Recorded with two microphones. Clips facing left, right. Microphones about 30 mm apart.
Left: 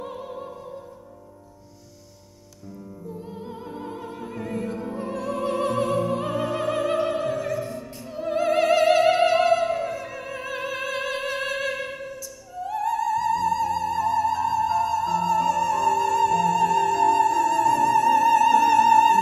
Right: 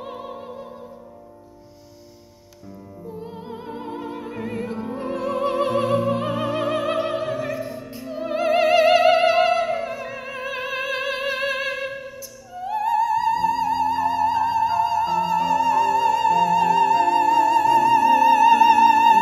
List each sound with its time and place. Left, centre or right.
0.0 s opera: right
3.0 s music: centre
12.5 s music: right